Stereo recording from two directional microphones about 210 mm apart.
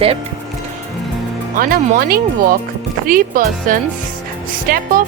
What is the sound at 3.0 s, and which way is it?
Speech, 40° right (ahead or behind).